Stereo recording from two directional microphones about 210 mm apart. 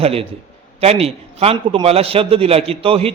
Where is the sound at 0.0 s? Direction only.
30° right (ahead or behind).